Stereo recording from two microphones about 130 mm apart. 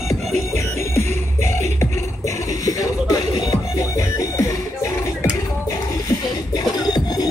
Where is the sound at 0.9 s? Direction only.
20° left (ahead or behind).